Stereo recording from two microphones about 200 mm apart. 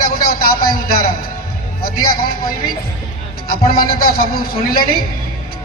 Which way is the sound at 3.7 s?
45° left (ahead or behind).